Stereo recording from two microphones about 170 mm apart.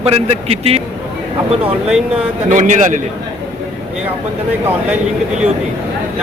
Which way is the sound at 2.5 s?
50° right (ahead or behind).